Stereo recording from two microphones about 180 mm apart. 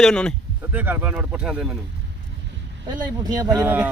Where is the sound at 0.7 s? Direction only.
10° right (ahead or behind).